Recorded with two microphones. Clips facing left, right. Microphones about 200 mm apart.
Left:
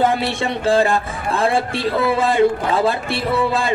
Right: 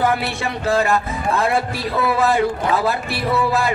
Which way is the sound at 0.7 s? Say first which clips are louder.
Left 2 dB; 30° left (ahead or behind).